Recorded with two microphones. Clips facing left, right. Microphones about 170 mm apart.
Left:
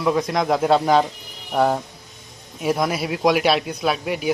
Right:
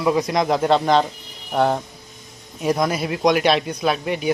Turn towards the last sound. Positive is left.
turn(degrees=5)  # may be behind; listen again after turning